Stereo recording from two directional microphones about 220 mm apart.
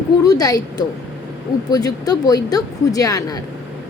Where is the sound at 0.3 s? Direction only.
15° left (ahead or behind).